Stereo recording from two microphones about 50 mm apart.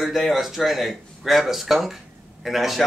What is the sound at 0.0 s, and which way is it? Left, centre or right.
Speech, centre.